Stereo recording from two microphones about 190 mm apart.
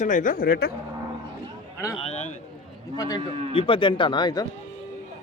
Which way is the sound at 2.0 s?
35° left (ahead or behind).